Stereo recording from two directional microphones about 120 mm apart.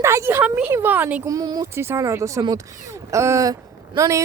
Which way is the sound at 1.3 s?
30° right (ahead or behind).